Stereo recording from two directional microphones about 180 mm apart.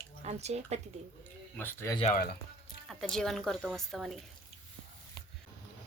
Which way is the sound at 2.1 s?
55° left (ahead or behind).